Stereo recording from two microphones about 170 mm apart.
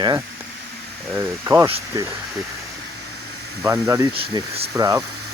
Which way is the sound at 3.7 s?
20° right (ahead or behind).